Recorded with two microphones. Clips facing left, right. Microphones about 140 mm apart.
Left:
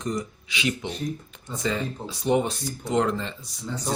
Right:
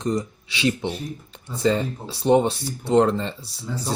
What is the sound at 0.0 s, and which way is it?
Speech, 30° right (ahead or behind).